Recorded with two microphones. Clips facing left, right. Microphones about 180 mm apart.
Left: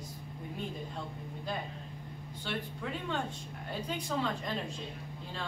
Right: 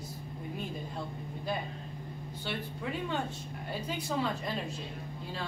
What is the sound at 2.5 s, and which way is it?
Speech, 5° right (ahead or behind).